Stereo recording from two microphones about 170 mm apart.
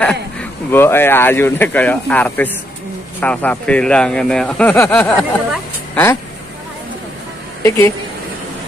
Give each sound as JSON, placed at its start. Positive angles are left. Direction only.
{"t": 0.0, "sound": "speech", "side_deg": 5}
{"t": 7.6, "sound": "speech", "side_deg": 20}